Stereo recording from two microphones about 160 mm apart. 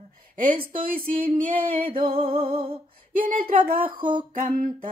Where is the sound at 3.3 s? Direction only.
60° right (ahead or behind).